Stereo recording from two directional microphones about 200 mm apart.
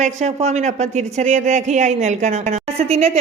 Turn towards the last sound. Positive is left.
turn(degrees=-30)  # may be behind; listen again after turning